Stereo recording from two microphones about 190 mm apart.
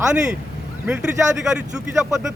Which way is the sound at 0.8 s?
5° right (ahead or behind).